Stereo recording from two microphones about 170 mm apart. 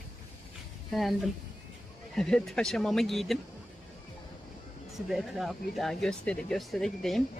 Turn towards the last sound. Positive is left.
turn(degrees=0)  # may be behind; listen again after turning